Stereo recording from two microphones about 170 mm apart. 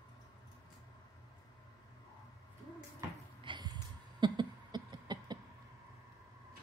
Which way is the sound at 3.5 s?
25° right (ahead or behind).